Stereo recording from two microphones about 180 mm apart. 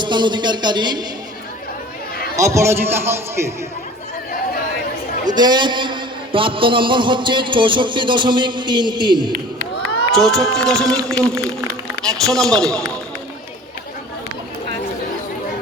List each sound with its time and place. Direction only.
0.0 s a man's voice: 25° right (ahead or behind)
2.3 s a man's voice: 15° right (ahead or behind)
5.2 s a man's voice: 25° right (ahead or behind)
10.2 s a man's voice: centre (ahead or behind)
12.0 s a man's voice: centre (ahead or behind)